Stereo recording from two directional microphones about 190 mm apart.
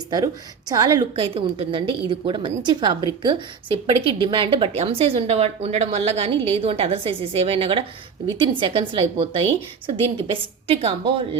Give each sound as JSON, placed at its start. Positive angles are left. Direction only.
{"t": 0.7, "sound": "a woman's voice", "side_deg": -20}